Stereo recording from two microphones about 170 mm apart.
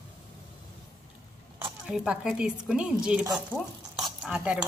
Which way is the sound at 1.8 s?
5° right (ahead or behind).